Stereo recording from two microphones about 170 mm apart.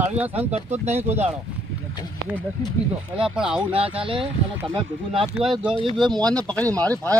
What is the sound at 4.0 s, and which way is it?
Speech, 30° right (ahead or behind).